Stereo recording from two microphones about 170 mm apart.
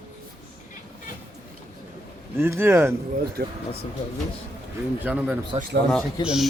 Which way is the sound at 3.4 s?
75° right (ahead or behind).